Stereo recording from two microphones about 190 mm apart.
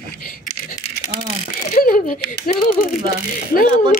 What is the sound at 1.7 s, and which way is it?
Speech, 50° left (ahead or behind).